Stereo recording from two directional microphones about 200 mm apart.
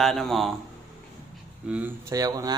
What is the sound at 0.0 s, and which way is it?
Speech, centre (ahead or behind).